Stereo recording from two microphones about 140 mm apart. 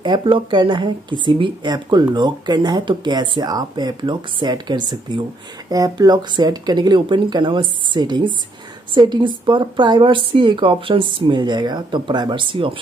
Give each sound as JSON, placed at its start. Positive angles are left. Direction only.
{"t": 0.0, "sound": "speech", "side_deg": -35}